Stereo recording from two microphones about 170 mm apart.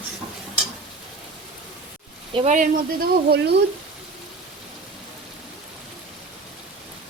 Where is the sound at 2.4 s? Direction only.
45° right (ahead or behind); by 3.5 s 65° right (ahead or behind).